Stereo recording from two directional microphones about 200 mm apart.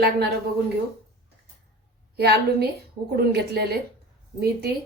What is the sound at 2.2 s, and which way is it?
A woman's voice, 55° right (ahead or behind).